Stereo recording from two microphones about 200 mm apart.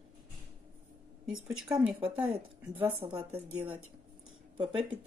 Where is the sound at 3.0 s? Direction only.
25° right (ahead or behind).